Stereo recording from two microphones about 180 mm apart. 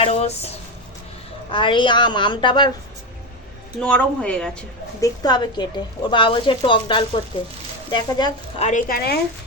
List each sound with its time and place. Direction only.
0.0 s speech: 35° left (ahead or behind)
1.5 s a woman's voice: 30° left (ahead or behind)
3.8 s speech: 5° left (ahead or behind)
4.9 s a woman's voice: 20° left (ahead or behind)
8.6 s speech: 50° left (ahead or behind)